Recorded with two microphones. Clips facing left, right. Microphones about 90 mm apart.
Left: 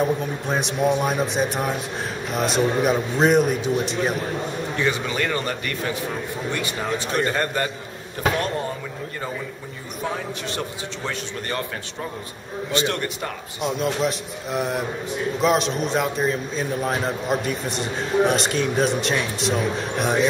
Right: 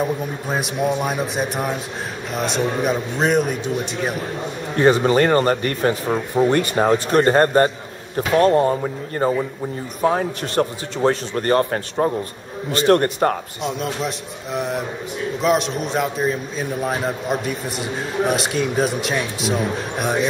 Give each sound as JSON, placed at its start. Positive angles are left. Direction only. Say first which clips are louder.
{"t": 0.0, "sound": "a man's voice", "louder": "even", "side_deg": -5}
{"t": 4.7, "sound": "a man's voice", "louder": "right 11 dB", "side_deg": -45}
{"t": 13.6, "sound": "a man's voice", "louder": "left 1 dB", "side_deg": 0}